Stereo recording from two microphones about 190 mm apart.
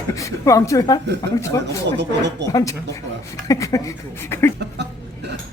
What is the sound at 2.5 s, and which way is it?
Speech, 15° left (ahead or behind).